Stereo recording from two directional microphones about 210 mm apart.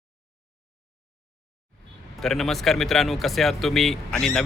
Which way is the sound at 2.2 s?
Centre (ahead or behind).